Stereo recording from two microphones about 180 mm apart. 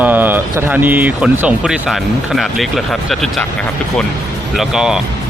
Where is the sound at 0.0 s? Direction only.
10° right (ahead or behind).